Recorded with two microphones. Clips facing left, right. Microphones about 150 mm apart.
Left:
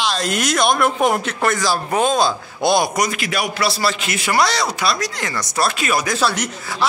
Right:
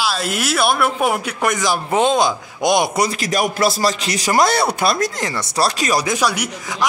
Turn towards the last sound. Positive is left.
turn(degrees=-15)  # may be behind; listen again after turning